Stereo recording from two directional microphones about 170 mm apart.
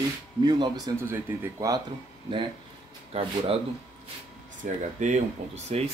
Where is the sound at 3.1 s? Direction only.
35° right (ahead or behind).